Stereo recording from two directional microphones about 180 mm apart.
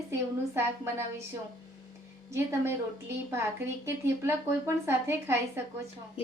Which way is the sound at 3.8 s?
15° right (ahead or behind).